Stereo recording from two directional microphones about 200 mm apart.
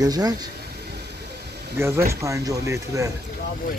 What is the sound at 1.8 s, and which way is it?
Speech, 10° right (ahead or behind).